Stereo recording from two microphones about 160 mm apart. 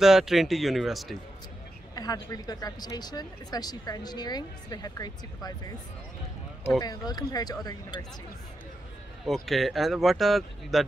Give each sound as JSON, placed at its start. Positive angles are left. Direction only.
{"t": 0.0, "sound": "a man's voice", "side_deg": 0}
{"t": 2.0, "sound": "speech", "side_deg": 25}
{"t": 6.8, "sound": "speech", "side_deg": 25}
{"t": 9.2, "sound": "a man's voice", "side_deg": 0}